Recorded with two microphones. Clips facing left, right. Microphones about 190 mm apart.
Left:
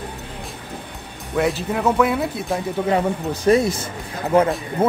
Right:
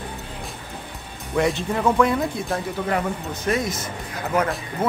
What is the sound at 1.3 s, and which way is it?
Speech, centre (ahead or behind).